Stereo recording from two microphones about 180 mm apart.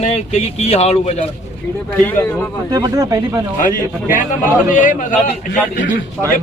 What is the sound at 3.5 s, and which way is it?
A man's voice, 50° left (ahead or behind).